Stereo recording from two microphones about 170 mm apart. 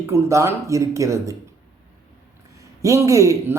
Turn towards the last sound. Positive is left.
turn(degrees=-20)  # may be behind; listen again after turning